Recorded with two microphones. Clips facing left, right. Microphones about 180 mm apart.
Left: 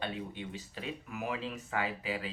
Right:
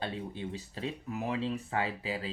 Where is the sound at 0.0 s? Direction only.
30° right (ahead or behind).